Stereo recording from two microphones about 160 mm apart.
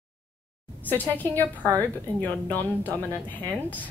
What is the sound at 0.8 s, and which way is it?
A woman's voice, 10° left (ahead or behind).